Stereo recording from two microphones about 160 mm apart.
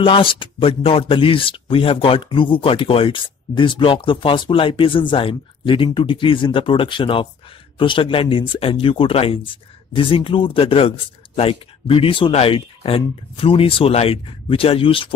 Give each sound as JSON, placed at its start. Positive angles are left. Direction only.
{"t": 0.0, "sound": "speech", "side_deg": 35}